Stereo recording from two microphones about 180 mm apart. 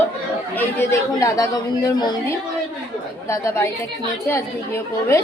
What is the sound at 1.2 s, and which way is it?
Speech, 20° left (ahead or behind).